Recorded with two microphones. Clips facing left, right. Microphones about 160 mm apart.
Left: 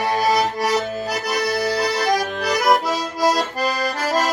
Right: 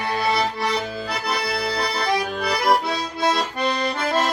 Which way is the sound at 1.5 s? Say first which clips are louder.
Left 4 dB; 45° left (ahead or behind).